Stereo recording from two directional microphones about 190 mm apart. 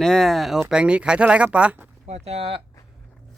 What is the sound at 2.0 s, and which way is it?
Speech, 35° right (ahead or behind).